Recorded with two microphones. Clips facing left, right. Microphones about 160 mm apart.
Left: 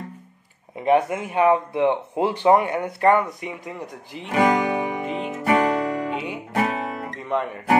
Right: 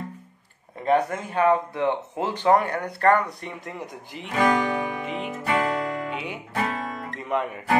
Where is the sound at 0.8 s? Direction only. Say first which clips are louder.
Left 3 dB; 10° left (ahead or behind).